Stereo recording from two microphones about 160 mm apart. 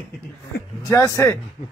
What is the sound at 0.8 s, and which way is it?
Speech, 20° left (ahead or behind).